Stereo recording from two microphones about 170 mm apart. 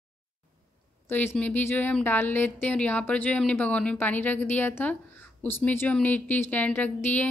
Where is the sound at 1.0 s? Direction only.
15° left (ahead or behind).